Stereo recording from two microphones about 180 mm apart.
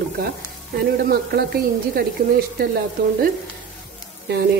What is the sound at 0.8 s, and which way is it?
A woman's voice, 60° right (ahead or behind).